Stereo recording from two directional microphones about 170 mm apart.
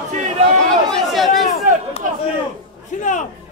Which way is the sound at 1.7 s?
50° right (ahead or behind).